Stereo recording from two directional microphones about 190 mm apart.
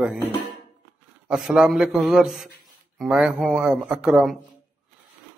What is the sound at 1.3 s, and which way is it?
A man's voice, 5° right (ahead or behind).